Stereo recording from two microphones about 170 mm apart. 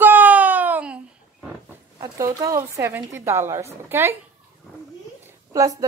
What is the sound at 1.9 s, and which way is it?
Speech, 20° right (ahead or behind).